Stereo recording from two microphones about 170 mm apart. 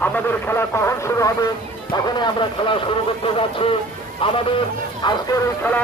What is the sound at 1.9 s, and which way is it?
Speech, 25° left (ahead or behind).